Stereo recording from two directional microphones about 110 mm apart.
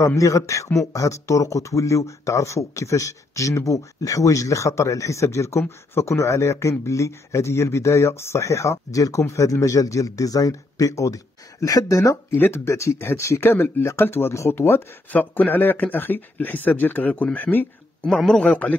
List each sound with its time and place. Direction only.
0.0 s speech: 30° left (ahead or behind); by 18.8 s 15° left (ahead or behind)